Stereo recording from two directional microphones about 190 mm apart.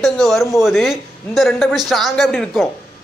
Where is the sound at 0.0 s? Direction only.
Centre (ahead or behind).